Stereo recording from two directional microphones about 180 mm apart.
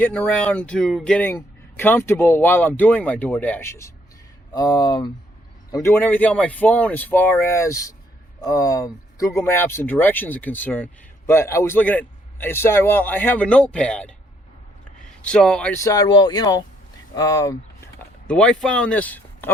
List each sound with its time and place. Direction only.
0.0 s a man's voice: 5° left (ahead or behind)
18.3 s speech: 5° left (ahead or behind)